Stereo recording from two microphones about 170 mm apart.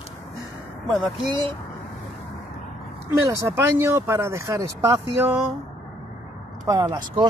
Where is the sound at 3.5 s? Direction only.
15° right (ahead or behind).